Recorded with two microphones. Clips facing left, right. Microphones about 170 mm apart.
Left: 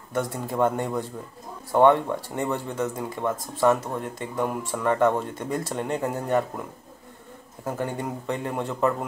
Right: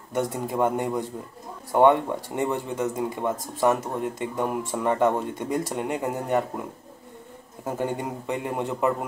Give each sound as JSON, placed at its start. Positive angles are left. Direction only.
{"t": 0.1, "sound": "speech", "side_deg": -20}
{"t": 7.6, "sound": "speech", "side_deg": -20}